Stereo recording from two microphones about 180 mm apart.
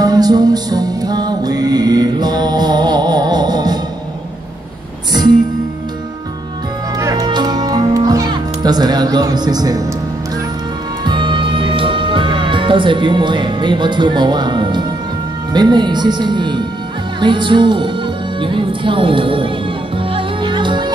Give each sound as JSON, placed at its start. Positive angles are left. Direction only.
{"t": 0.0, "sound": "music", "side_deg": -20}
{"t": 5.1, "sound": "music", "side_deg": -25}
{"t": 7.0, "sound": "music", "side_deg": -20}
{"t": 11.1, "sound": "music", "side_deg": -25}
{"t": 15.5, "sound": "speech", "side_deg": -25}
{"t": 17.2, "sound": "music", "side_deg": -25}